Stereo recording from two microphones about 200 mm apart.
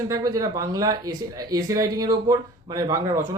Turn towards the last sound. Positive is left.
turn(degrees=-15)  # may be behind; listen again after turning